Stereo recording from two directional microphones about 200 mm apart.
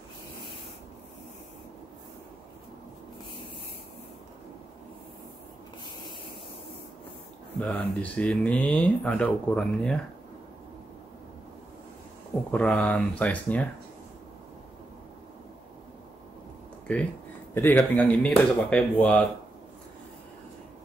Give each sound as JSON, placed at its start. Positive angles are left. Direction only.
{"t": 7.6, "sound": "speech", "side_deg": 5}
{"t": 12.4, "sound": "speech", "side_deg": 5}
{"t": 16.8, "sound": "speech", "side_deg": 5}